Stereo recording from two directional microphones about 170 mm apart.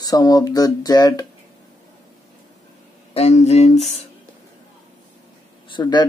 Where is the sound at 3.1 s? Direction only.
40° left (ahead or behind).